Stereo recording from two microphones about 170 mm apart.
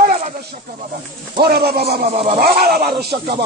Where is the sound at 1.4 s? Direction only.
70° right (ahead or behind).